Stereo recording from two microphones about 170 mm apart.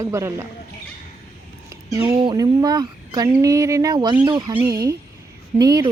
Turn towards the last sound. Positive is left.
turn(degrees=-20)  # may be behind; listen again after turning